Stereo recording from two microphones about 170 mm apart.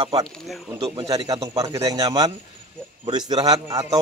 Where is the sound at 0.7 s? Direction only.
20° right (ahead or behind).